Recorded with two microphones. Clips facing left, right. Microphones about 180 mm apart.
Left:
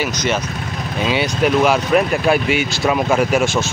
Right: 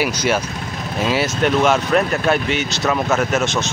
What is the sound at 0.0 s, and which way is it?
Speech, 10° right (ahead or behind).